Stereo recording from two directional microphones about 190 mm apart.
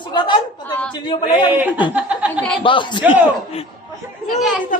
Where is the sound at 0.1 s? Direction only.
25° left (ahead or behind).